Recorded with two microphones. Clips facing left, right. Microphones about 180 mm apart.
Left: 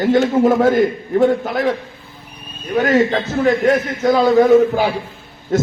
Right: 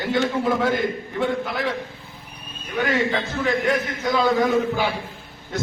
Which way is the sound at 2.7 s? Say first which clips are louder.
Left 8 dB; 45° left (ahead or behind).